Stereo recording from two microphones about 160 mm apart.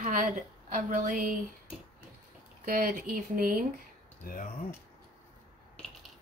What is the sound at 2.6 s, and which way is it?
A woman's voice, 60° right (ahead or behind).